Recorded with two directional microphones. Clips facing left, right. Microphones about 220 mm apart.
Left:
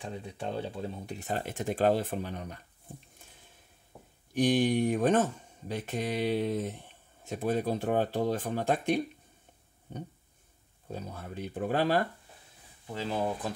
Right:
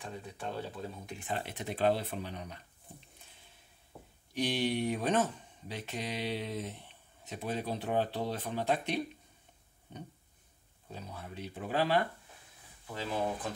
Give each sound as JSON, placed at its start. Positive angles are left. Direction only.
{"t": 0.0, "sound": "speech", "side_deg": 25}
{"t": 1.2, "sound": "speech", "side_deg": 45}
{"t": 4.3, "sound": "speech", "side_deg": 50}
{"t": 10.9, "sound": "speech", "side_deg": 45}